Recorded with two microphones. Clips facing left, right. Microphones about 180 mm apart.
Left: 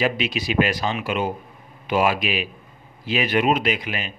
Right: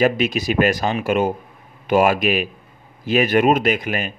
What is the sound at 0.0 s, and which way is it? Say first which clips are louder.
Speech: right 5 dB; 45° right (ahead or behind).